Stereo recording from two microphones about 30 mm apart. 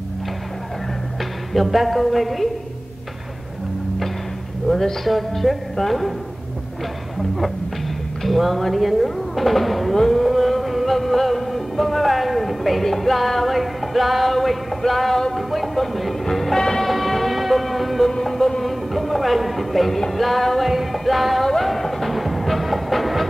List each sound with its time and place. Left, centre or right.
1.5 s music: centre
4.6 s speech: centre
5.1 s music: centre
8.2 s music: centre
9.9 s speech: centre
10.2 s music: centre
14.8 s speech: centre
15.3 s music: centre
16.5 s music: centre
16.8 s music: centre